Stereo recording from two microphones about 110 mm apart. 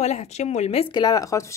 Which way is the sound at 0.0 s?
90° left.